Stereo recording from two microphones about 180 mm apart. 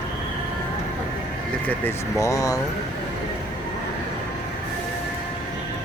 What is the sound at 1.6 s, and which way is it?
Speech, 15° left (ahead or behind).